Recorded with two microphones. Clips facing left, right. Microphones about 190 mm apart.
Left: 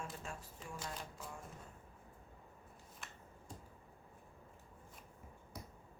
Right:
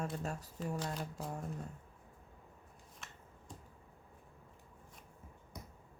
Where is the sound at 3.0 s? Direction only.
Centre (ahead or behind).